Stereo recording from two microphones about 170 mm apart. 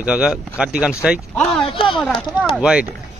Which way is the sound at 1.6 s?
30° left (ahead or behind).